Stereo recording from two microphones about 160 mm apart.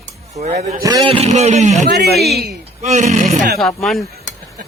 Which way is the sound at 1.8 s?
90° right.